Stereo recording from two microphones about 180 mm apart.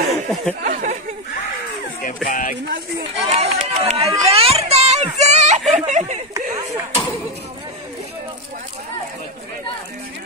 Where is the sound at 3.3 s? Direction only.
35° right (ahead or behind).